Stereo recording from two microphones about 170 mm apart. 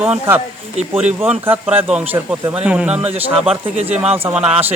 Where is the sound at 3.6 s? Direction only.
35° right (ahead or behind).